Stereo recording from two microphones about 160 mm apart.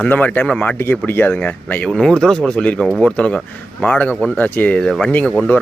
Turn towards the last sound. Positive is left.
turn(degrees=10)  # may be behind; listen again after turning